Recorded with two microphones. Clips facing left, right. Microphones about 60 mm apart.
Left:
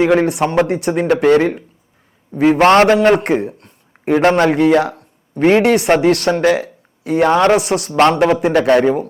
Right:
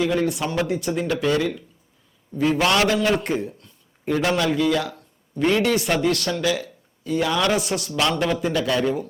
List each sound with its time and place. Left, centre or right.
0.0 s speech: left
0.4 s speech: left
2.3 s a man's voice: left
6.0 s speech: left
6.3 s speech: left
7.5 s speech: left
7.9 s speech: left